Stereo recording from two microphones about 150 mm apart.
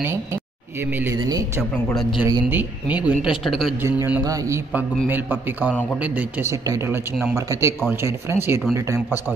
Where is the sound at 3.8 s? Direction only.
15° right (ahead or behind).